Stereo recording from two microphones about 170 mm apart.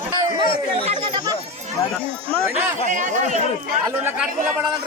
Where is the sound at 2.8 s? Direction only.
45° right (ahead or behind).